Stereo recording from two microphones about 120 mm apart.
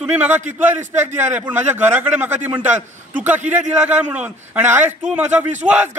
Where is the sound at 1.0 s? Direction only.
15° right (ahead or behind).